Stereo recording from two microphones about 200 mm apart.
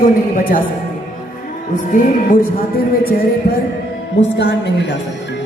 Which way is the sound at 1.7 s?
40° left (ahead or behind).